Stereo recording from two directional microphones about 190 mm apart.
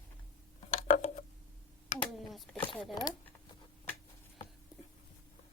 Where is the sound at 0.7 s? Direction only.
40° left (ahead or behind).